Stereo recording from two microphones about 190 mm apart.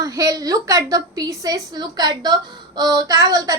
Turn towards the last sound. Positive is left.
turn(degrees=-20)  # may be behind; listen again after turning